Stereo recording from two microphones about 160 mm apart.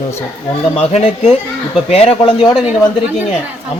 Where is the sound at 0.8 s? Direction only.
45° left (ahead or behind).